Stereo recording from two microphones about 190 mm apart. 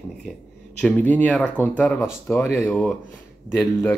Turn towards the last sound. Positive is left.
turn(degrees=15)  # may be behind; listen again after turning